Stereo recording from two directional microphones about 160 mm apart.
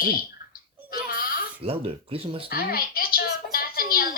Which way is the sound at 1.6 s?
40° right (ahead or behind).